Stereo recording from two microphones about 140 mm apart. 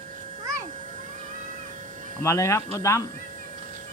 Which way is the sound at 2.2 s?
20° left (ahead or behind).